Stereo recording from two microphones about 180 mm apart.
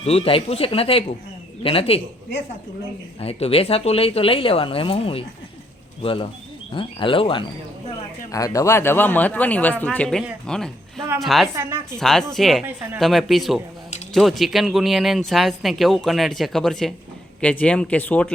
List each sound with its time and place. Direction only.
0.0 s speech: 35° left (ahead or behind)
3.2 s speech: 35° left (ahead or behind)
8.3 s speech: 20° left (ahead or behind); by 11.4 s centre (ahead or behind)
11.5 s speech: 15° right (ahead or behind)
11.9 s speech: centre (ahead or behind)